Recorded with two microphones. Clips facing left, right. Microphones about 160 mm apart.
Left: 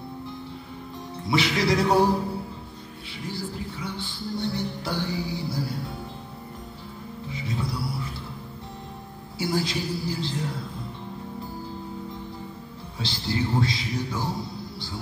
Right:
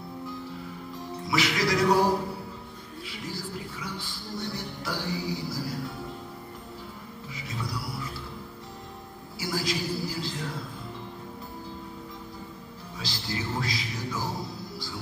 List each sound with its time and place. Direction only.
1.2 s music: 25° left (ahead or behind)
3.3 s speech: 25° left (ahead or behind)
7.2 s music: 25° left (ahead or behind)
9.4 s music: 25° left (ahead or behind)
13.0 s music: 25° left (ahead or behind)